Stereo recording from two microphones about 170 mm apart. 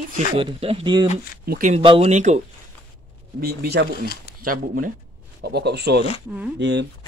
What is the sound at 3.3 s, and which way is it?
Speech, 70° right (ahead or behind).